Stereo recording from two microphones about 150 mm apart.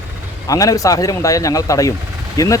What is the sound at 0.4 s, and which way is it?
Speech, 25° left (ahead or behind).